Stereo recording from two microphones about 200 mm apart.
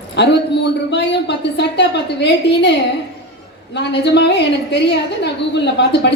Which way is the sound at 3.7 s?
60° left (ahead or behind).